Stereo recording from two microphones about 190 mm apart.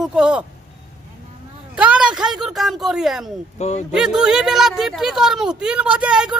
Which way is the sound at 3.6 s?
35° left (ahead or behind).